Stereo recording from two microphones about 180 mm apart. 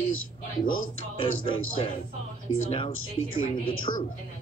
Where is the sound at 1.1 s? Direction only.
30° left (ahead or behind).